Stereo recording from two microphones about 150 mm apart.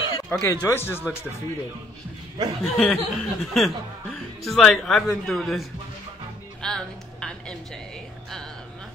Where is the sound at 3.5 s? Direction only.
Centre (ahead or behind).